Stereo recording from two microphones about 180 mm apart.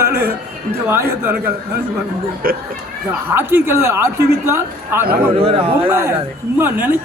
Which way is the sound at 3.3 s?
15° right (ahead or behind).